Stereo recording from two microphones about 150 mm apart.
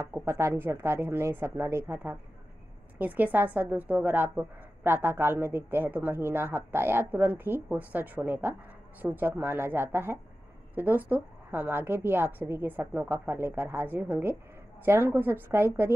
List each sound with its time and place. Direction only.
0.2 s a woman's voice: 20° right (ahead or behind)